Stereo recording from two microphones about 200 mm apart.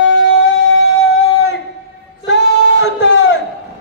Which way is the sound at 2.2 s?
60° left (ahead or behind).